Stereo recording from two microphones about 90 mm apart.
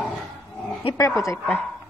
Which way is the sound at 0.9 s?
35° left (ahead or behind).